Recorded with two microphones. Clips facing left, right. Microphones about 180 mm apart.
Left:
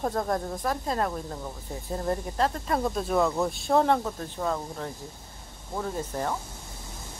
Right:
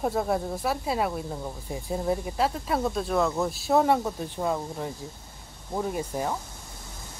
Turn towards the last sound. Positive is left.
turn(degrees=-10)  # may be behind; listen again after turning